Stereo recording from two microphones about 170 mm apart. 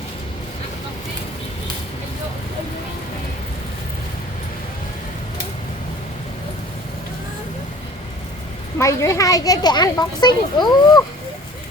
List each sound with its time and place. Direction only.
8.8 s speech: 15° left (ahead or behind)